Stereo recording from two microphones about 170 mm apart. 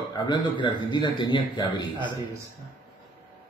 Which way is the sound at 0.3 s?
25° left (ahead or behind).